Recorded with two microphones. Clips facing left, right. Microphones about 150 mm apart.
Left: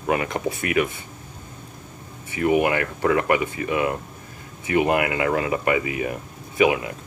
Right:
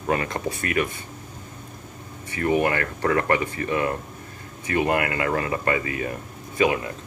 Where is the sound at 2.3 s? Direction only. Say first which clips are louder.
Left 2 dB; 15° left (ahead or behind).